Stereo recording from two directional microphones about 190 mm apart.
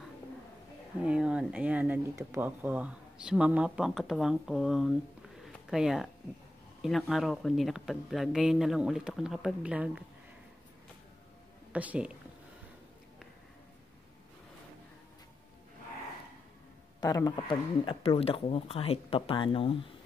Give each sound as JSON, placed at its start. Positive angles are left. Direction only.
{"t": 0.9, "sound": "speech", "side_deg": -5}
{"t": 5.4, "sound": "a sound", "side_deg": 0}
{"t": 6.8, "sound": "speech", "side_deg": 0}
{"t": 11.7, "sound": "speech", "side_deg": -5}
{"t": 17.0, "sound": "speech", "side_deg": 20}